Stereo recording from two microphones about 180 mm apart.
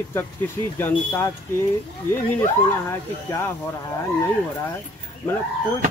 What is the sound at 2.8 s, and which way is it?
Speech, 15° left (ahead or behind).